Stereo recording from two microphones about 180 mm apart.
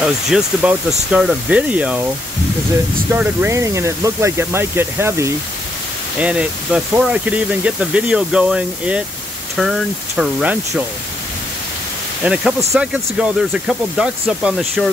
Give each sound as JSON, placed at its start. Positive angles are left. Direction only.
{"t": 0.0, "sound": "speech", "side_deg": -5}
{"t": 3.1, "sound": "speech", "side_deg": -10}
{"t": 12.2, "sound": "speech", "side_deg": -5}